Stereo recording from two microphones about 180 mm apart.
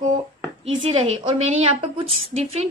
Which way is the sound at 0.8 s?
35° right (ahead or behind).